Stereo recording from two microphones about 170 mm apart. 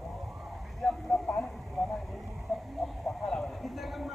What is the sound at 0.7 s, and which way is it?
Vehicle, centre (ahead or behind).